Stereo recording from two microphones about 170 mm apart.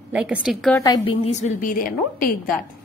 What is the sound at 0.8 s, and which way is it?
Speech, 25° left (ahead or behind).